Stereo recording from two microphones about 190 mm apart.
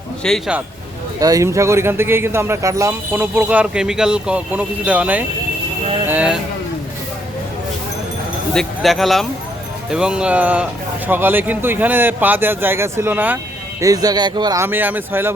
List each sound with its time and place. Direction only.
0.2 s speech: centre (ahead or behind)
1.2 s speech: 15° right (ahead or behind)
6.1 s a sound: 5° right (ahead or behind)
8.5 s speech: centre (ahead or behind)